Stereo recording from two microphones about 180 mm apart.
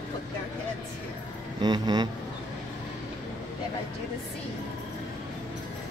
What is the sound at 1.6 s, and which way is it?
Speech, 25° right (ahead or behind).